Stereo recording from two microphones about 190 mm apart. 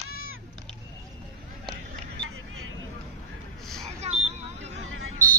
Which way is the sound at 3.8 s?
35° right (ahead or behind).